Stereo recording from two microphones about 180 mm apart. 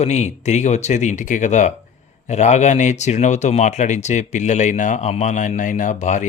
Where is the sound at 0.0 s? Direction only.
40° left (ahead or behind).